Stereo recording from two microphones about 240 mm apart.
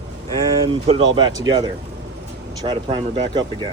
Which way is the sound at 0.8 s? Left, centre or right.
Centre.